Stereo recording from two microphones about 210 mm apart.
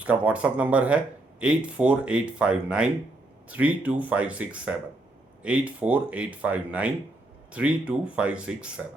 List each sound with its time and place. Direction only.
0.0 s speech: 5° right (ahead or behind)